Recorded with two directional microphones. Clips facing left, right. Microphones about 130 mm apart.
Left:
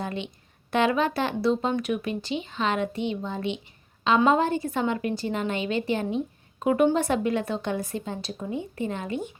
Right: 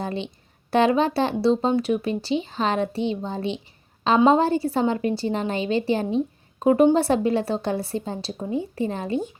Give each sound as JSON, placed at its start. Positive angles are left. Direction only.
{"t": 0.0, "sound": "a woman's voice", "side_deg": -35}